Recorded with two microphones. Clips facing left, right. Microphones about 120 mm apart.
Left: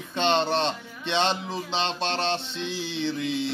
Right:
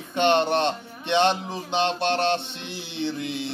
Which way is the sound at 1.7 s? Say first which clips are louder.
Right 5 dB; 55° right (ahead or behind).